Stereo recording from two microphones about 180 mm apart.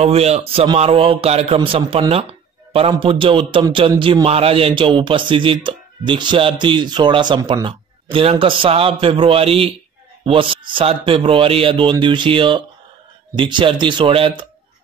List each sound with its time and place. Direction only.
0.0 s a man's voice: 35° right (ahead or behind)